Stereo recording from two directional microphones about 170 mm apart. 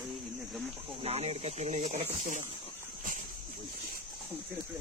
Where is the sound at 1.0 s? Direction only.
35° right (ahead or behind).